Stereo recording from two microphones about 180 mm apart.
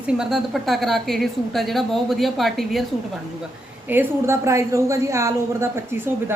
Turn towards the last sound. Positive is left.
turn(degrees=-10)  # may be behind; listen again after turning